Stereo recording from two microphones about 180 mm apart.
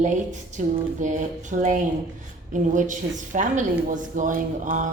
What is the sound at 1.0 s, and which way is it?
Speech, 45° right (ahead or behind).